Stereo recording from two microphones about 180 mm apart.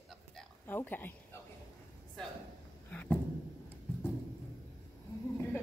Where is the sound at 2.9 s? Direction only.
10° left (ahead or behind).